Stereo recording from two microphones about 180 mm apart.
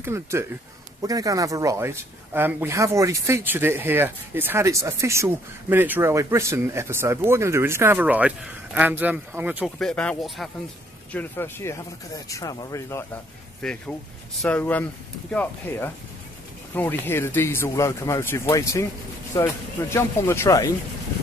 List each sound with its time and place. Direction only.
0.0 s speech: 15° right (ahead or behind)
9.8 s speech: 5° left (ahead or behind)
13.6 s speech: 5° left (ahead or behind)